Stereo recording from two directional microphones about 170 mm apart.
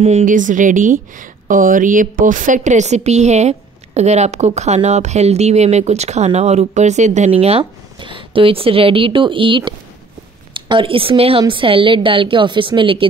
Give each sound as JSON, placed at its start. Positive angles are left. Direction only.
{"t": 0.0, "sound": "a woman's voice", "side_deg": -45}